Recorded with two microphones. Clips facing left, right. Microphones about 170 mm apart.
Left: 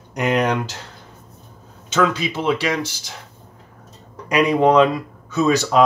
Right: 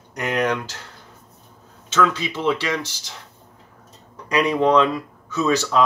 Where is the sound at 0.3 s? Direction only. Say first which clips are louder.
Left 2 dB; 20° left (ahead or behind).